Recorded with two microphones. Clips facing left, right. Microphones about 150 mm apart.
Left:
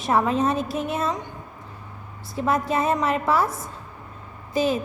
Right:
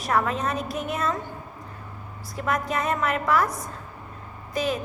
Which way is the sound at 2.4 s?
30° left (ahead or behind).